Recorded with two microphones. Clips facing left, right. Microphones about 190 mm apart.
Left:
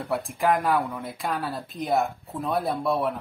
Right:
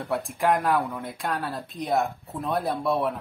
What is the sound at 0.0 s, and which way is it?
Speech, centre (ahead or behind).